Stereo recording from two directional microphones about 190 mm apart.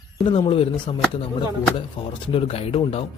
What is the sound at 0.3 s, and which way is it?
Speech, 30° left (ahead or behind).